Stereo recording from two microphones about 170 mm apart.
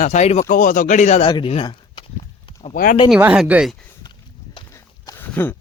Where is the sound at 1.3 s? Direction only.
30° left (ahead or behind).